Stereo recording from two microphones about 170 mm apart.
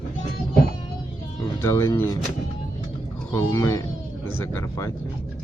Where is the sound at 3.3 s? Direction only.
15° left (ahead or behind).